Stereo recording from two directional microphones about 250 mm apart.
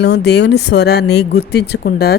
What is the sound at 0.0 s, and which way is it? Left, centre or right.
A woman's voice, left.